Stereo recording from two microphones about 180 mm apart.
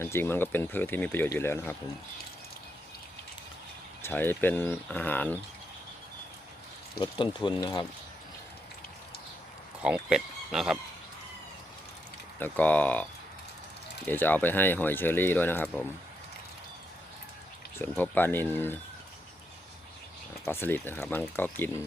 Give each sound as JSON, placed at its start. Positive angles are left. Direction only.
{"t": 0.0, "sound": "speech", "side_deg": 15}
{"t": 4.0, "sound": "speech", "side_deg": 10}
{"t": 7.0, "sound": "speech", "side_deg": 25}
{"t": 9.8, "sound": "speech", "side_deg": -5}
{"t": 12.4, "sound": "speech", "side_deg": 10}
{"t": 17.7, "sound": "speech", "side_deg": 10}
{"t": 20.4, "sound": "speech", "side_deg": 15}